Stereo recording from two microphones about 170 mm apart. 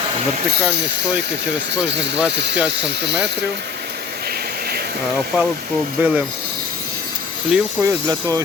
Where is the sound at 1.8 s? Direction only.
90° right.